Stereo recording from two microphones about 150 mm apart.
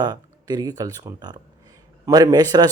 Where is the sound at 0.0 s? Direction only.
30° right (ahead or behind).